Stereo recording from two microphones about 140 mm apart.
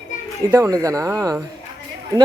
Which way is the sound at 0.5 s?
25° right (ahead or behind).